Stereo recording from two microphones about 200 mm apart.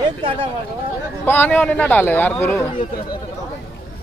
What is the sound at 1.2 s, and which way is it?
A man's voice, 10° left (ahead or behind).